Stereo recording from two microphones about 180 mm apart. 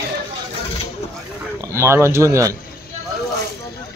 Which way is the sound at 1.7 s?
15° right (ahead or behind).